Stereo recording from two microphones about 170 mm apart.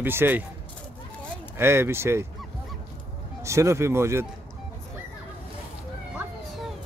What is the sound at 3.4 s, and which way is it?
Speech, 15° right (ahead or behind).